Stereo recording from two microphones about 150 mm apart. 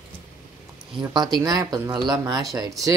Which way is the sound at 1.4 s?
25° right (ahead or behind).